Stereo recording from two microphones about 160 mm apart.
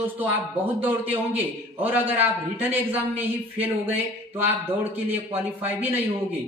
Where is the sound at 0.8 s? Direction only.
10° right (ahead or behind).